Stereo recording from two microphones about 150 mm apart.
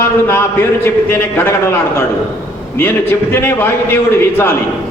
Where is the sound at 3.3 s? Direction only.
15° left (ahead or behind).